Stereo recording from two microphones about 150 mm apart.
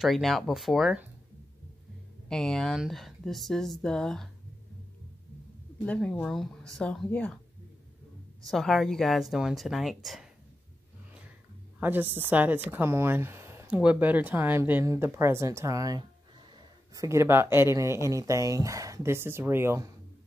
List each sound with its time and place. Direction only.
0.0 s speech: centre (ahead or behind)
2.2 s speech: 5° left (ahead or behind)
5.9 s speech: 5° left (ahead or behind)
8.5 s speech: centre (ahead or behind)
11.8 s a woman's voice: 15° right (ahead or behind)